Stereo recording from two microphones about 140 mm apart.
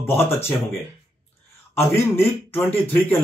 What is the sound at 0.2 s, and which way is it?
Speech, 15° left (ahead or behind).